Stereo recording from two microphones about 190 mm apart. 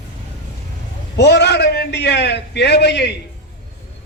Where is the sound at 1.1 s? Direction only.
60° left (ahead or behind).